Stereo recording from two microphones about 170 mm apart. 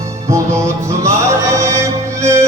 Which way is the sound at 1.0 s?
15° right (ahead or behind).